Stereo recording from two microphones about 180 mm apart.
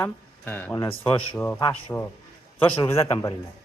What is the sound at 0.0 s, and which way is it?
Speech, 10° left (ahead or behind).